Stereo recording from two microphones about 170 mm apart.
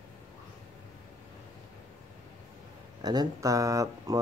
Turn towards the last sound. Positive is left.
turn(degrees=-20)  # may be behind; listen again after turning